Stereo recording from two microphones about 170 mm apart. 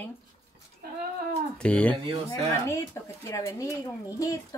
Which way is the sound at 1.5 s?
5° left (ahead or behind).